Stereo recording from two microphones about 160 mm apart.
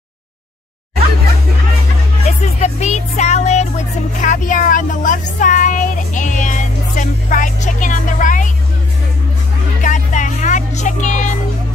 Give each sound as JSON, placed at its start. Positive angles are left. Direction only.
{"t": 2.2, "sound": "speech", "side_deg": 45}
{"t": 9.8, "sound": "music", "side_deg": 50}